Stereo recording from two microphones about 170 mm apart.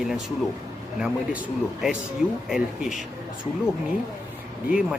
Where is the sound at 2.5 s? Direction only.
5° right (ahead or behind).